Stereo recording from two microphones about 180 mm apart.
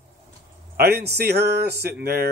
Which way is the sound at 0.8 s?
60° right (ahead or behind).